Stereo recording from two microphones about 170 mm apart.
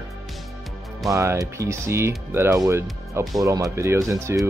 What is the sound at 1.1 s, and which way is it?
Speech, 15° right (ahead or behind).